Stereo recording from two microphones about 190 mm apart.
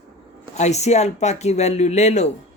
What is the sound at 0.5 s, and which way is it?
Speech, 35° left (ahead or behind).